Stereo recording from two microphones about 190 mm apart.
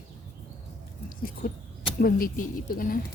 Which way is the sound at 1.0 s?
50° left (ahead or behind).